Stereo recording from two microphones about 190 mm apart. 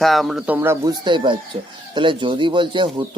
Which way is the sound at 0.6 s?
15° right (ahead or behind).